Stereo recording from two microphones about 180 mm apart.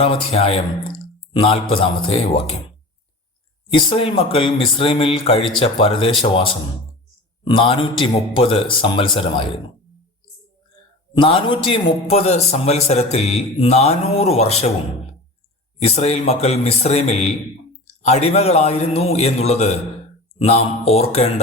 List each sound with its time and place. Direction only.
0.0 s speech: 35° left (ahead or behind)
3.7 s speech: 30° left (ahead or behind)
11.1 s speech: 30° left (ahead or behind)
15.8 s speech: 35° left (ahead or behind)